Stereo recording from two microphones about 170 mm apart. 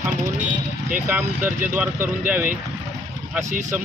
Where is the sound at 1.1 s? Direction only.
10° right (ahead or behind).